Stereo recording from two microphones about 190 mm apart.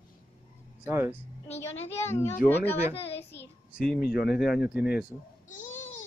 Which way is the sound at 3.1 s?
65° left (ahead or behind).